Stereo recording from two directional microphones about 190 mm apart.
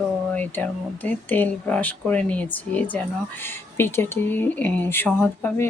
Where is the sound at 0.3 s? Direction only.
10° left (ahead or behind).